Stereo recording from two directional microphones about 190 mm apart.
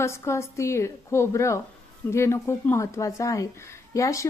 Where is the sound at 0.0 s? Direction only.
15° left (ahead or behind).